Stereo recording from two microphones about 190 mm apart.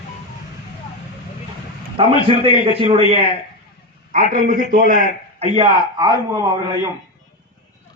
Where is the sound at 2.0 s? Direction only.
30° right (ahead or behind).